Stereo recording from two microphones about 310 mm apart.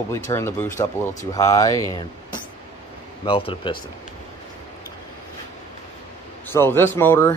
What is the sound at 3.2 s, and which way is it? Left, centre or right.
Speech, centre.